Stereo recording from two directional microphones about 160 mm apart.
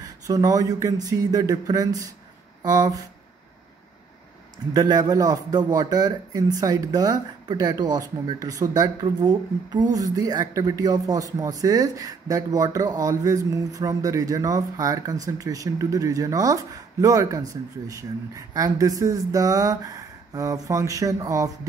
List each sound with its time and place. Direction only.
0.0 s speech: 25° right (ahead or behind)
4.7 s speech: 25° right (ahead or behind)